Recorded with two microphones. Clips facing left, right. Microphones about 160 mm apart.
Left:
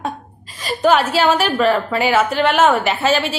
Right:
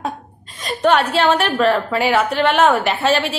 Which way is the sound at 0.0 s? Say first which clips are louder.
Even; centre (ahead or behind).